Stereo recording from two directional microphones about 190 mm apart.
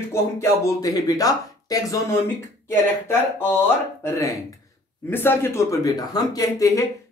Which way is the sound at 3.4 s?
10° left (ahead or behind).